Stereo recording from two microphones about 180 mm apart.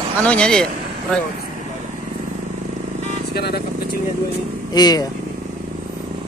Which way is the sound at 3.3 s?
65° left (ahead or behind).